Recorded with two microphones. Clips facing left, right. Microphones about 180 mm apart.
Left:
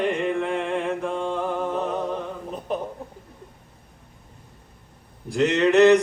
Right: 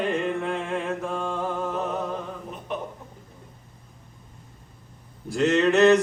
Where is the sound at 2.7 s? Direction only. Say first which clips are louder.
Left 4 dB; 35° left (ahead or behind).